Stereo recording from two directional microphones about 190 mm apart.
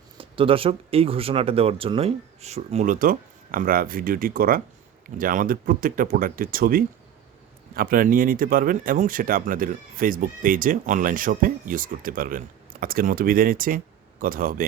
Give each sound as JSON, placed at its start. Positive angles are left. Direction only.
{"t": 0.2, "sound": "speech", "side_deg": -30}